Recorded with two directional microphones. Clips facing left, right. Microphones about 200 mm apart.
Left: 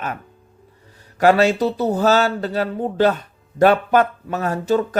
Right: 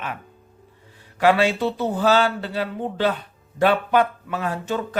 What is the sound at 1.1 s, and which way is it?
Speech, 40° left (ahead or behind).